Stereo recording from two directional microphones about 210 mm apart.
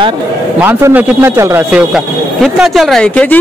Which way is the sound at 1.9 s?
Centre (ahead or behind).